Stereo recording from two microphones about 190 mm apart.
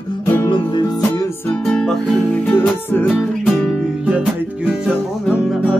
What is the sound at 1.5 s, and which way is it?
Music, 5° left (ahead or behind).